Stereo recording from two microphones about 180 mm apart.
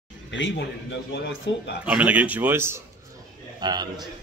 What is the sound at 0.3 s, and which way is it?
A man's voice, 90° left.